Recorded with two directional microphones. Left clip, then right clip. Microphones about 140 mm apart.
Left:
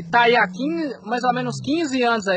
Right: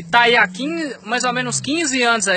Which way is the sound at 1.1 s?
40° right (ahead or behind).